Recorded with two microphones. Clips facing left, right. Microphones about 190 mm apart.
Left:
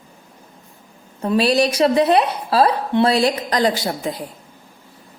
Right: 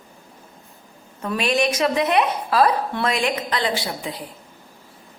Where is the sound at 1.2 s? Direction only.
35° left (ahead or behind).